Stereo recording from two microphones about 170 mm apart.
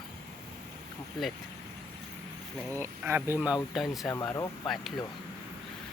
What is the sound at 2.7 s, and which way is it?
Speech, 15° right (ahead or behind).